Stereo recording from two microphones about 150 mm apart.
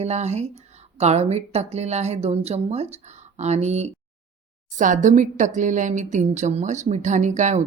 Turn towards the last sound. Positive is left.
turn(degrees=-55)  # may be behind; listen again after turning